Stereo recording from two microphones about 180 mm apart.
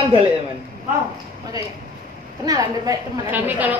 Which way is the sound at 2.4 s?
20° right (ahead or behind).